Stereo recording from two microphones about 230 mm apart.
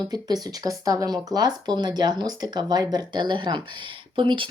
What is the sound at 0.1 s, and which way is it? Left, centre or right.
Speech, centre.